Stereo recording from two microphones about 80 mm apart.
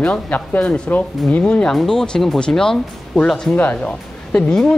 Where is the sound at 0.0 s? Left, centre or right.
Centre.